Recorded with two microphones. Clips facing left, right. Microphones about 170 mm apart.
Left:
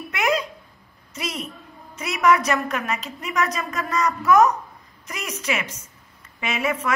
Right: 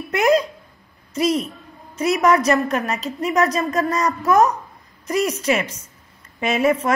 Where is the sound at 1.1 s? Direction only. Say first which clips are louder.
Right 11 dB; 40° right (ahead or behind).